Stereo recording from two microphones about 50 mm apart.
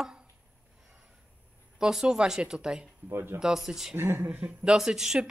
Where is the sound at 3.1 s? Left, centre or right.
Right.